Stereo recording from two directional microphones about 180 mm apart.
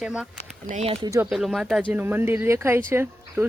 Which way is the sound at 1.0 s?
15° right (ahead or behind).